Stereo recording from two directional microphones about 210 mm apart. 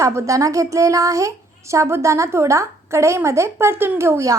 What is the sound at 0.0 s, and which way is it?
A woman's voice, 15° right (ahead or behind).